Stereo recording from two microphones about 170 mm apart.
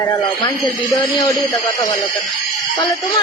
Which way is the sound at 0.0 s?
20° left (ahead or behind).